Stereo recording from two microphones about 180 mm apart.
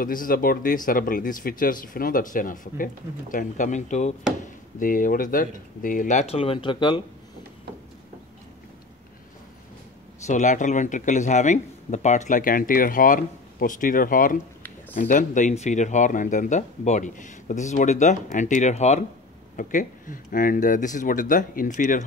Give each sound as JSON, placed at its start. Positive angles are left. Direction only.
{"t": 0.0, "sound": "speech", "side_deg": 50}
{"t": 10.2, "sound": "speech", "side_deg": 40}